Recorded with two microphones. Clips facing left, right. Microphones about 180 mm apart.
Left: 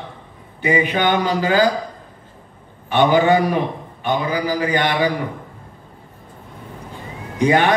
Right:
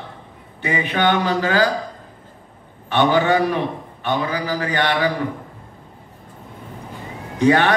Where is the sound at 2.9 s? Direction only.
10° left (ahead or behind).